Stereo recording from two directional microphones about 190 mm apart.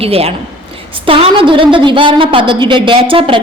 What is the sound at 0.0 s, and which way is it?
A woman's voice, 30° right (ahead or behind).